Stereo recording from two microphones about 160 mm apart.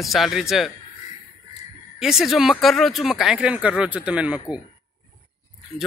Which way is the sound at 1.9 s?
Centre (ahead or behind).